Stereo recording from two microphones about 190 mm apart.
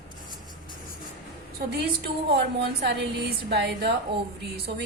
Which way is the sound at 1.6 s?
55° right (ahead or behind).